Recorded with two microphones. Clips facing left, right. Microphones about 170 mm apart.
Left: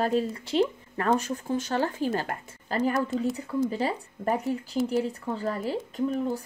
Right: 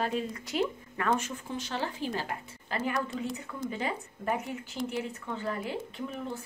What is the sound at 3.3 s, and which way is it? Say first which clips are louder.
A woman's voice: left 8 dB; 35° left (ahead or behind).